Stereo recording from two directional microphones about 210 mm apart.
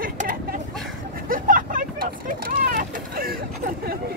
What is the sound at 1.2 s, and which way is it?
Vehicle, 40° right (ahead or behind).